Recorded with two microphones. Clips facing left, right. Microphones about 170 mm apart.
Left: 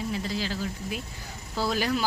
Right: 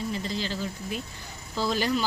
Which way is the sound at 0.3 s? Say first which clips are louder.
Even; 5° left (ahead or behind).